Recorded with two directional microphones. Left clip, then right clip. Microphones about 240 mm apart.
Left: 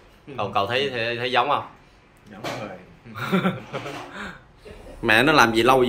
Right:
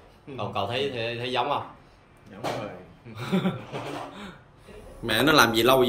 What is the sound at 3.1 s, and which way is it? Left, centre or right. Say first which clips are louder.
Speech: left 5 dB; centre.